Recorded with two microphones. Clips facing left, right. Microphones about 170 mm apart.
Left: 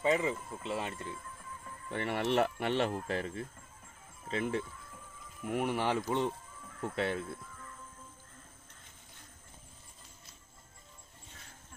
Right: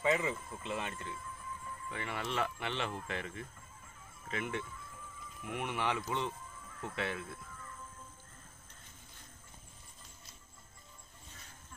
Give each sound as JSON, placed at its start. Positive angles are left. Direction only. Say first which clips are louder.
{"t": 0.0, "sound": "speech", "louder": "left 2 dB", "side_deg": 35}
{"t": 2.0, "sound": "speech", "louder": "left 8 dB", "side_deg": 60}
{"t": 2.4, "sound": "speech", "louder": "left 7 dB", "side_deg": 40}